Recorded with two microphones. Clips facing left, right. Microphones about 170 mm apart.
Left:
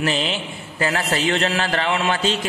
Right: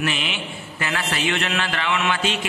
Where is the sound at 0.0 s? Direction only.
35° left (ahead or behind).